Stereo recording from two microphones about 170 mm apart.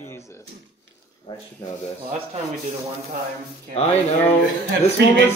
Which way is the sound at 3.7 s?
40° left (ahead or behind).